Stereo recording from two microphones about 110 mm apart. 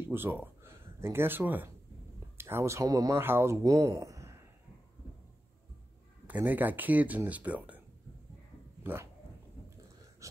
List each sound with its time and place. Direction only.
0.0 s speech: 20° right (ahead or behind)
3.2 s speech: 20° right (ahead or behind)
6.2 s speech: 15° right (ahead or behind)
8.8 s speech: 20° right (ahead or behind)